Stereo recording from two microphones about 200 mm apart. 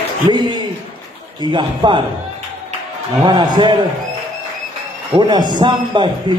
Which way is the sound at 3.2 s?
20° right (ahead or behind).